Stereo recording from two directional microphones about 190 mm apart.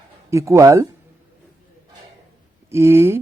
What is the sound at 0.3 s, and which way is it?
Speech, 15° right (ahead or behind).